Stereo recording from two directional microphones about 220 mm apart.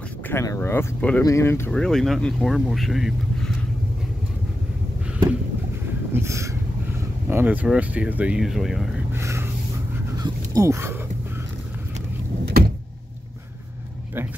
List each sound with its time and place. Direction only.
0.3 s speech: 10° left (ahead or behind)
6.1 s a sound: 15° right (ahead or behind)
7.2 s speech: 10° right (ahead or behind)
9.2 s a sound: 15° right (ahead or behind)
10.2 s dog: 15° right (ahead or behind)
12.4 s vehicle: 45° right (ahead or behind)